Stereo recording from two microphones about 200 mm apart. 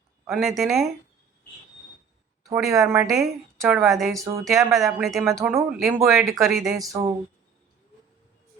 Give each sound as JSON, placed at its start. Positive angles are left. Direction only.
{"t": 0.3, "sound": "a woman's voice", "side_deg": 0}
{"t": 2.6, "sound": "a woman's voice", "side_deg": -5}
{"t": 4.1, "sound": "speech", "side_deg": -15}
{"t": 4.7, "sound": "a woman's voice", "side_deg": 0}
{"t": 6.9, "sound": "speech", "side_deg": -15}